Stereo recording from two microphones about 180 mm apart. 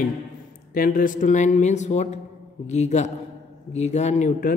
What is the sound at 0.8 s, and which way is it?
A woman's voice, 50° left (ahead or behind).